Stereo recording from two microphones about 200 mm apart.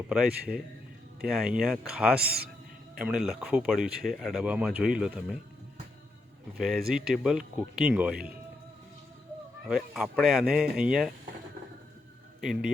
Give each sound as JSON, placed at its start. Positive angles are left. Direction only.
{"t": 0.1, "sound": "speech", "side_deg": -5}
{"t": 2.2, "sound": "a man's voice", "side_deg": -50}
{"t": 3.0, "sound": "speech", "side_deg": -5}
{"t": 6.6, "sound": "speech", "side_deg": 0}
{"t": 9.6, "sound": "speech", "side_deg": 0}
{"t": 12.4, "sound": "speech", "side_deg": -5}